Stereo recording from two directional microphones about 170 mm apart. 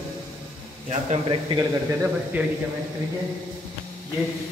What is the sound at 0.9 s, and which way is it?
Speech, 40° right (ahead or behind).